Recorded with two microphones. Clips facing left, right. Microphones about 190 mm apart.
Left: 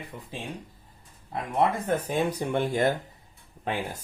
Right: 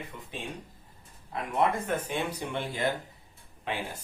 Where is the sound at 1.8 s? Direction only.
40° left (ahead or behind).